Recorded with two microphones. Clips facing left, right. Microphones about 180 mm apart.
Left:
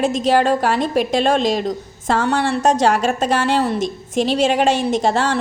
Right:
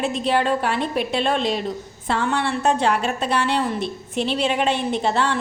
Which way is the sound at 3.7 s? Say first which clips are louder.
Left 5 dB; 90° left.